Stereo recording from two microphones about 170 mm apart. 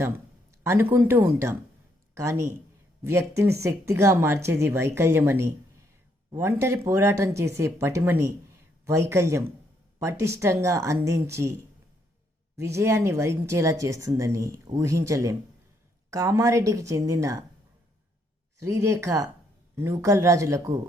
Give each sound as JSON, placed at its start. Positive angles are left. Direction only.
{"t": 0.6, "sound": "speech", "side_deg": -15}
{"t": 12.5, "sound": "a woman's voice", "side_deg": -15}
{"t": 18.6, "sound": "speech", "side_deg": -15}